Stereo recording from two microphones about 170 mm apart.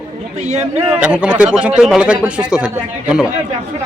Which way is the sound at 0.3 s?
40° right (ahead or behind).